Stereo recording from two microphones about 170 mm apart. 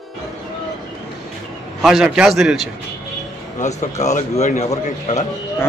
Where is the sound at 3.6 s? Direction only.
40° left (ahead or behind).